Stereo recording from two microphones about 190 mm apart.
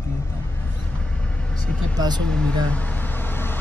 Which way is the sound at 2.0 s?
20° right (ahead or behind).